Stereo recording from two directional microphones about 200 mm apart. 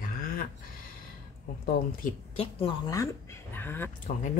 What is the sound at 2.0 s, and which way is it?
Speech, 30° left (ahead or behind).